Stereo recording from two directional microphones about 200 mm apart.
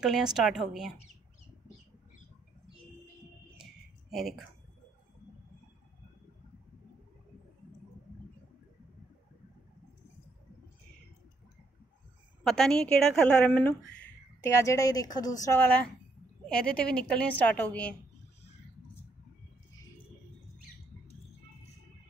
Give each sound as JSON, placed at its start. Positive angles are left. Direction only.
{"t": 0.0, "sound": "a woman's voice", "side_deg": 0}
{"t": 4.1, "sound": "a woman's voice", "side_deg": 0}
{"t": 12.4, "sound": "a woman's voice", "side_deg": 0}